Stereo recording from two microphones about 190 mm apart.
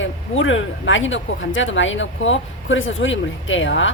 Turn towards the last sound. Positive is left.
turn(degrees=80)